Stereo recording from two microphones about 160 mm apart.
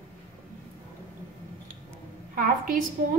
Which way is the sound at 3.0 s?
60° right (ahead or behind).